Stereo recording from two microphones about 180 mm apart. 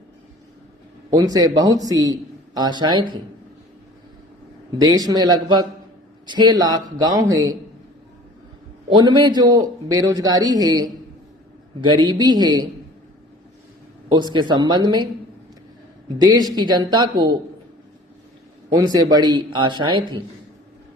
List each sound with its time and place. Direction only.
1.1 s a man's voice: 20° right (ahead or behind)
4.8 s a man's voice: 20° right (ahead or behind)
8.9 s a man's voice: 25° right (ahead or behind)
14.3 s a man's voice: 25° right (ahead or behind)
16.1 s a man's voice: 20° right (ahead or behind)
18.7 s a man's voice: 20° right (ahead or behind)